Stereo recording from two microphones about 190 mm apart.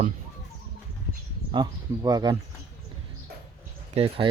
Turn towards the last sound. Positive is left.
turn(degrees=-30)  # may be behind; listen again after turning